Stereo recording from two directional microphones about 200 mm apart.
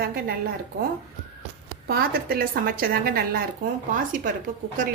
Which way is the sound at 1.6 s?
50° right (ahead or behind).